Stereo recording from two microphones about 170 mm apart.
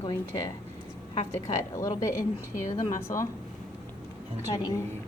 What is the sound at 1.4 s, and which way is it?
A woman's voice, 20° left (ahead or behind).